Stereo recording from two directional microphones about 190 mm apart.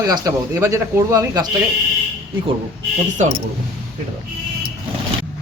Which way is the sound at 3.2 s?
40° right (ahead or behind).